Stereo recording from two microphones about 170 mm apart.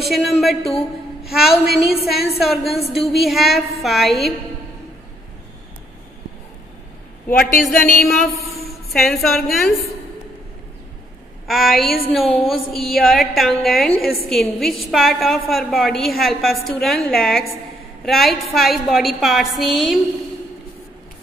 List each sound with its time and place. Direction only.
0.0 s a woman's voice: centre (ahead or behind)
7.2 s a woman's voice: 55° left (ahead or behind)
8.0 s a woman's voice: centre (ahead or behind)
11.4 s a woman's voice: centre (ahead or behind)